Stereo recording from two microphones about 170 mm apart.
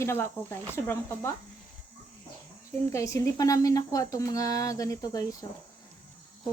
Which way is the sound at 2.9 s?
15° left (ahead or behind).